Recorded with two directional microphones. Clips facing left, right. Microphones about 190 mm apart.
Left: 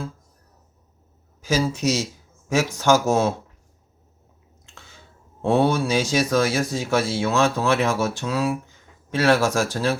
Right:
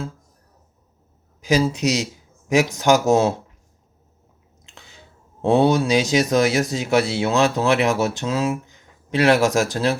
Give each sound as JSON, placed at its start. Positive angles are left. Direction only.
{"t": 1.4, "sound": "speech", "side_deg": -15}
{"t": 4.6, "sound": "a sound", "side_deg": -15}
{"t": 5.4, "sound": "speech", "side_deg": -20}